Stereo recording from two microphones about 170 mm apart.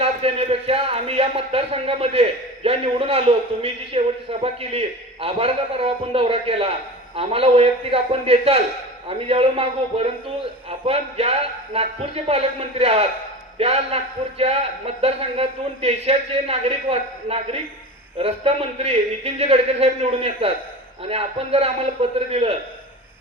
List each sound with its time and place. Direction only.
0.0 s speech: 35° right (ahead or behind)